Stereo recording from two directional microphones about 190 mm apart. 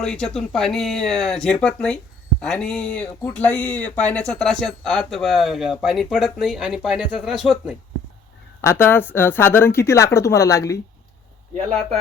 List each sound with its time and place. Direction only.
0.0 s speech: 5° left (ahead or behind)
8.6 s speech: 10° left (ahead or behind)